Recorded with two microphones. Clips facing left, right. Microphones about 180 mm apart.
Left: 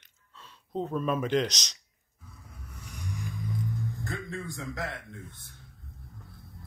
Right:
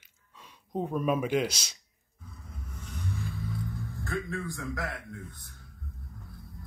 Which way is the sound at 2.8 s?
10° left (ahead or behind).